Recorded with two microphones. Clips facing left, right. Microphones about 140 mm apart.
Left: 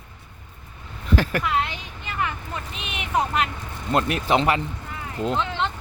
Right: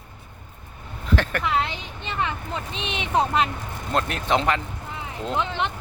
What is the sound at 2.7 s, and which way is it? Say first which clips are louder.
Speech: right 2 dB; 25° right (ahead or behind).